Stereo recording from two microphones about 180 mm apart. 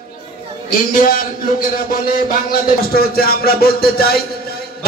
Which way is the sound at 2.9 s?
55° left (ahead or behind).